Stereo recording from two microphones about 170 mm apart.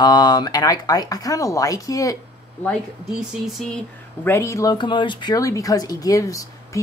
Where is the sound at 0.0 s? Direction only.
25° left (ahead or behind).